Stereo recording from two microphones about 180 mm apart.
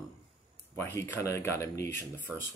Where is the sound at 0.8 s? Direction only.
15° left (ahead or behind).